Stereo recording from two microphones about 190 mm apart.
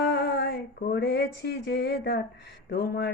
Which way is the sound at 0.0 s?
60° left (ahead or behind).